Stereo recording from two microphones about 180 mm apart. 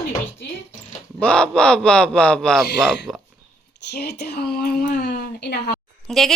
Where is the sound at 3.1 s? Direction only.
20° right (ahead or behind).